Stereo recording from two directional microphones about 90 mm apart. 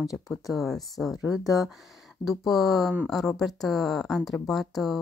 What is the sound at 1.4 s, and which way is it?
Speech, 40° left (ahead or behind).